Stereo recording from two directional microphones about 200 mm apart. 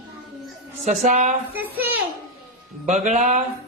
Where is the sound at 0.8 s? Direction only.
35° right (ahead or behind).